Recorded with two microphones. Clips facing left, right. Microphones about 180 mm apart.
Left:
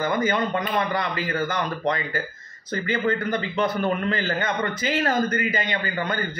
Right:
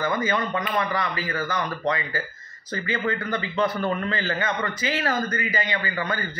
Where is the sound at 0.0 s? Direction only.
20° left (ahead or behind).